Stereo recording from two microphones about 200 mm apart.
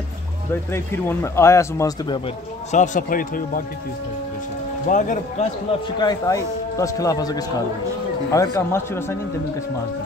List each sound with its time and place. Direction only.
0.7 s a man's voice: 15° left (ahead or behind)
2.7 s speech: 40° left (ahead or behind)
4.8 s speech: 40° left (ahead or behind)
5.9 s a man's voice: 20° left (ahead or behind)